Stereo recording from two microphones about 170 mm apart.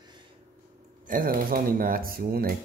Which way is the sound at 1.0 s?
55° right (ahead or behind).